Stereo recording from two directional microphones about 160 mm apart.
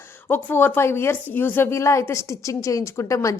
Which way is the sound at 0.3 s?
10° left (ahead or behind).